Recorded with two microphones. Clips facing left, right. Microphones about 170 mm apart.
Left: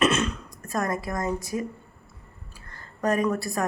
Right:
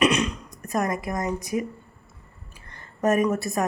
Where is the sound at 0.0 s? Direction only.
15° right (ahead or behind).